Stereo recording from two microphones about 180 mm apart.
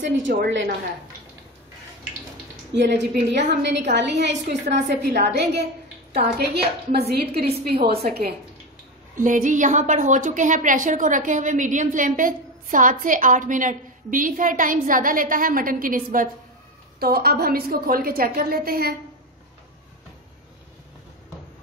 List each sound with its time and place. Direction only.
0.2 s a woman's voice: 80° right
2.7 s a woman's voice: 70° right (ahead or behind)
9.1 s a woman's voice: 45° right (ahead or behind)